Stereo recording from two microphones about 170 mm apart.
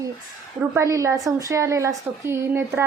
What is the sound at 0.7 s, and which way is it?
A woman's voice, 20° right (ahead or behind).